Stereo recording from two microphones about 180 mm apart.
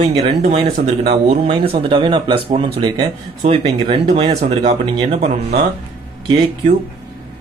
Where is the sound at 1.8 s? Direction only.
25° right (ahead or behind).